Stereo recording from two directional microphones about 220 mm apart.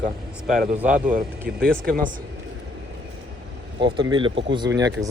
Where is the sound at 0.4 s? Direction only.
Centre (ahead or behind).